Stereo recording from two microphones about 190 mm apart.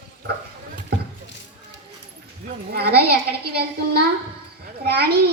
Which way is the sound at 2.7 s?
55° right (ahead or behind).